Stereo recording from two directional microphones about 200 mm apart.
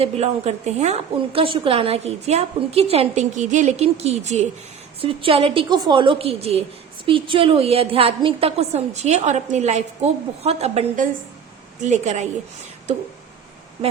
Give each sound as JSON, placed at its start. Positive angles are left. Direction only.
{"t": 0.0, "sound": "a woman's voice", "side_deg": -30}